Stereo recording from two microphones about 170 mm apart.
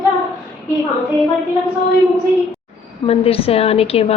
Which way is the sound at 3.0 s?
35° left (ahead or behind).